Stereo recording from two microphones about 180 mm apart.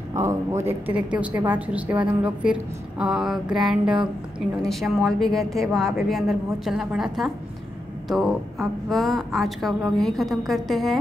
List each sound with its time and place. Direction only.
0.1 s a woman's voice: 15° right (ahead or behind); by 11.0 s centre (ahead or behind)